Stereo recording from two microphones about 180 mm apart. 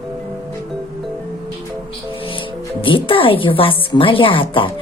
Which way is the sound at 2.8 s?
30° left (ahead or behind).